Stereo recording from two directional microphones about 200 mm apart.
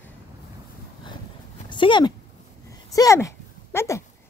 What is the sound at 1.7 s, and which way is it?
A woman's voice, 25° left (ahead or behind).